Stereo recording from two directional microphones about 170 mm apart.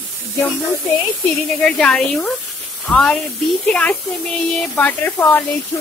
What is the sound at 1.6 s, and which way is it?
Speech, 5° left (ahead or behind).